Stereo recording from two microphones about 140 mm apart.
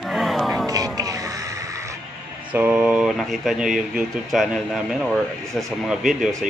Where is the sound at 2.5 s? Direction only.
10° right (ahead or behind).